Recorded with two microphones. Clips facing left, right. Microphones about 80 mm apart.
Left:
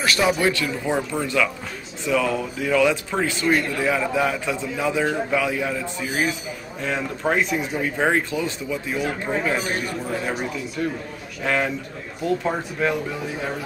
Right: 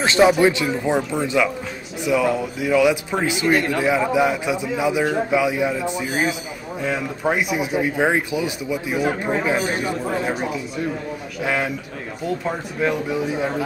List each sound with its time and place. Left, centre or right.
0.0 s a man's voice: right
11.4 s a man's voice: centre